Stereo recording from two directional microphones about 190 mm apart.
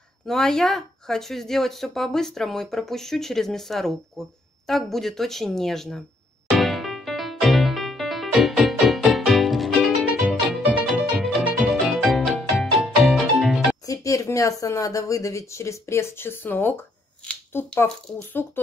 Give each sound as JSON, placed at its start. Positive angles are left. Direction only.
{"t": 0.3, "sound": "speech", "side_deg": 0}
{"t": 6.5, "sound": "music", "side_deg": 0}
{"t": 13.8, "sound": "speech", "side_deg": 15}